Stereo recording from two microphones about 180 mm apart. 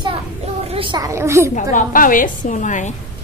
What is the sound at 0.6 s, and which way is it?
Speech, 30° right (ahead or behind).